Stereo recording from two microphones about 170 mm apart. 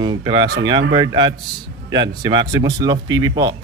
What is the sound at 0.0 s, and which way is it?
Speech, 25° right (ahead or behind).